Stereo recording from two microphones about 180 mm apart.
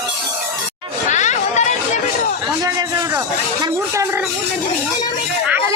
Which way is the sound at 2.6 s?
20° right (ahead or behind).